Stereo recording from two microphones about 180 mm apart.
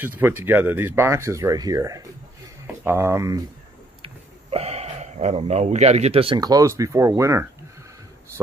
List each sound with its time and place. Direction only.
0.0 s speech: 10° right (ahead or behind)
4.0 s speech: 35° right (ahead or behind); by 7.4 s 15° right (ahead or behind)